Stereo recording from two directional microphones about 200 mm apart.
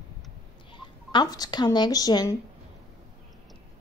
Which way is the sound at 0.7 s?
25° left (ahead or behind).